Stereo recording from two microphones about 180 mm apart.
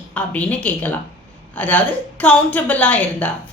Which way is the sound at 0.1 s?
10° left (ahead or behind).